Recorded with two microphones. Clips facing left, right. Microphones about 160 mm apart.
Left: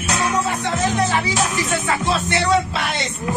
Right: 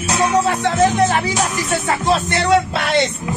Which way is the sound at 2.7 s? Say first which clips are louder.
Right 7 dB; 65° right (ahead or behind).